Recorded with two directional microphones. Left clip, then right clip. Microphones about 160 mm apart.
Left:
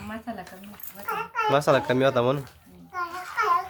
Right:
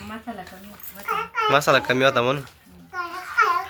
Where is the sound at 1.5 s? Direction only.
15° left (ahead or behind).